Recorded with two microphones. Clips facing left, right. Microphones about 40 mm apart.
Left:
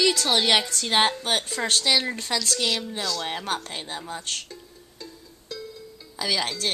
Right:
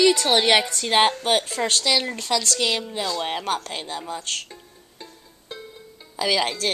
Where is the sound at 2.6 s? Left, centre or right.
Right.